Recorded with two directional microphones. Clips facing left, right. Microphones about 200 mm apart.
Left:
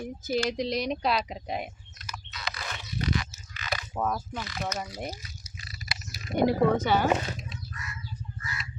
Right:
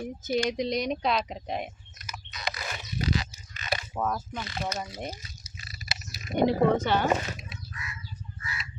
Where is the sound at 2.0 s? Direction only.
15° right (ahead or behind).